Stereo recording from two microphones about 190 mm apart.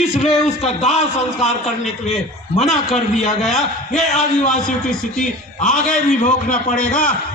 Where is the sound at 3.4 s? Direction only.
Centre (ahead or behind).